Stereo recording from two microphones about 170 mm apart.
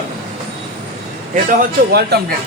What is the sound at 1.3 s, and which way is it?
Speech, 55° right (ahead or behind).